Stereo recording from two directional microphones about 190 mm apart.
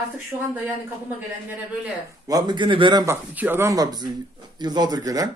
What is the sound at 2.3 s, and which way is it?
Speech, 20° right (ahead or behind).